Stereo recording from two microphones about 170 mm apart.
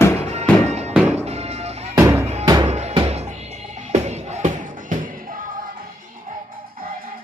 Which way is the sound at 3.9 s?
40° right (ahead or behind).